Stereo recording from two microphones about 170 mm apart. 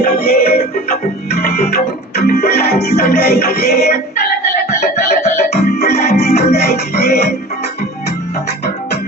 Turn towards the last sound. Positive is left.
turn(degrees=70)  # may be behind; listen again after turning